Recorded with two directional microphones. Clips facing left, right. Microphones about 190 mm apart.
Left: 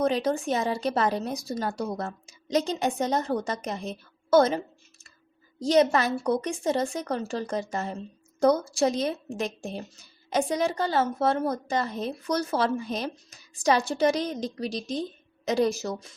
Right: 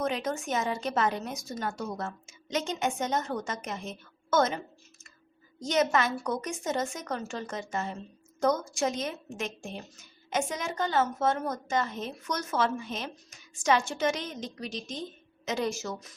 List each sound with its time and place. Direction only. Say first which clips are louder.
0.0 s a woman's voice: left 6 dB; 35° left (ahead or behind)